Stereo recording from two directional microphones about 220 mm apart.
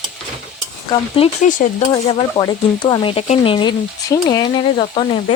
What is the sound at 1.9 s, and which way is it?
Speech, 20° left (ahead or behind).